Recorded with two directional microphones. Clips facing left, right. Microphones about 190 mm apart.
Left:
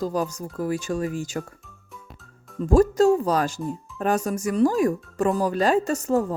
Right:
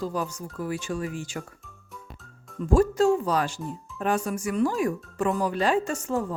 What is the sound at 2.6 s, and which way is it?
A child's voice, 40° left (ahead or behind).